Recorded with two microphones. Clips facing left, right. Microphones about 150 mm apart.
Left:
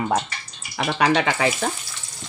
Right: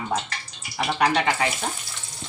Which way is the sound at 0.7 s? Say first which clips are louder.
Left 2 dB; 90° left.